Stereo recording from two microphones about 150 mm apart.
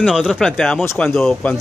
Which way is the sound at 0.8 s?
15° left (ahead or behind).